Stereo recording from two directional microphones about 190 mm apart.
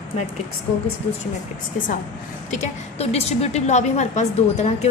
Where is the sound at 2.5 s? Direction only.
35° left (ahead or behind).